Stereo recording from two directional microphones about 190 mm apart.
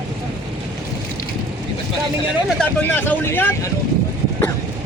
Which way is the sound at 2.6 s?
10° left (ahead or behind).